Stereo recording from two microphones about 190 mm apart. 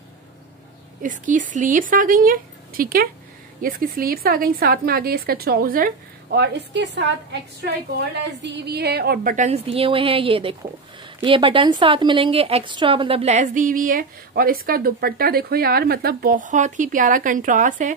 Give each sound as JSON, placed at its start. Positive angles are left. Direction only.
{"t": 1.0, "sound": "a woman's voice", "side_deg": -40}
{"t": 6.3, "sound": "a woman's voice", "side_deg": -65}
{"t": 8.3, "sound": "a woman's voice", "side_deg": -70}